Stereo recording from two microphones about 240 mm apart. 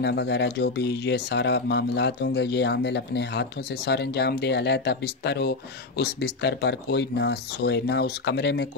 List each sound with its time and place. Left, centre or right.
0.0 s speech: left